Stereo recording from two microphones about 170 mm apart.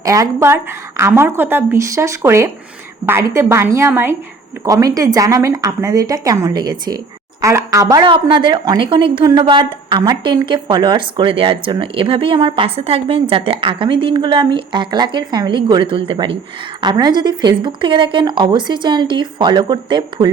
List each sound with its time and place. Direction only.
0.0 s a woman's voice: 20° right (ahead or behind)